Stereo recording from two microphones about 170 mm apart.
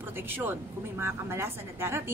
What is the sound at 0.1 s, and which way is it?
A woman's voice, 10° right (ahead or behind).